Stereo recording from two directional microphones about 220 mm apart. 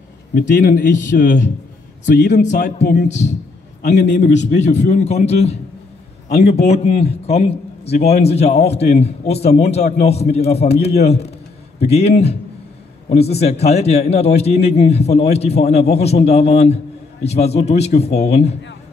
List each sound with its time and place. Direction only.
0.3 s a man's voice: 40° left (ahead or behind)